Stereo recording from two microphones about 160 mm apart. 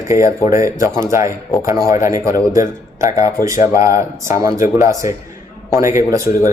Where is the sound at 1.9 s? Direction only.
20° right (ahead or behind).